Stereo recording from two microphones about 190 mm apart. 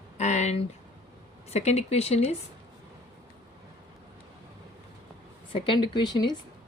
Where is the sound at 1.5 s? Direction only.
35° left (ahead or behind).